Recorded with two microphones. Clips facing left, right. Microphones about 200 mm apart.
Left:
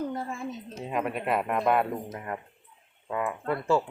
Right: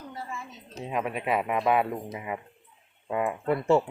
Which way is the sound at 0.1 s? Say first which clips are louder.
Left 5 dB; 50° left (ahead or behind).